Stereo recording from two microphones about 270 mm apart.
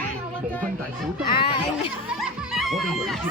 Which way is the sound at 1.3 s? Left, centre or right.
Centre.